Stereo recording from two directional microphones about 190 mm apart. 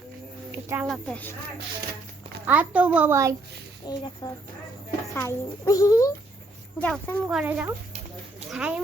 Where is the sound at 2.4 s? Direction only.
10° right (ahead or behind).